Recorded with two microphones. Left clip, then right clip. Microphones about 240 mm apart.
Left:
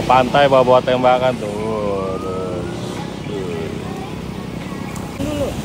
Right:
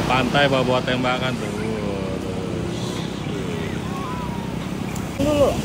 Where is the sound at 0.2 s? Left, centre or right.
Left.